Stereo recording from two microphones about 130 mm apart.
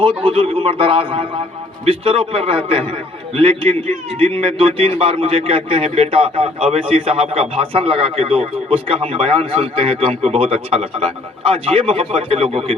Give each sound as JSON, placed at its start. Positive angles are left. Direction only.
{"t": 0.0, "sound": "a man's voice", "side_deg": -45}